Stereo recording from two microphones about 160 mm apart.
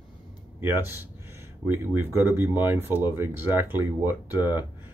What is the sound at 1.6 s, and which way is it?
Speech, 15° right (ahead or behind).